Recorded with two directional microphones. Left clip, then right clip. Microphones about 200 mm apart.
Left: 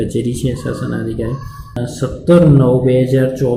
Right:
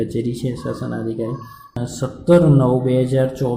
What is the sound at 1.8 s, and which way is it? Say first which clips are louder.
Speech: left 5 dB; 10° right (ahead or behind).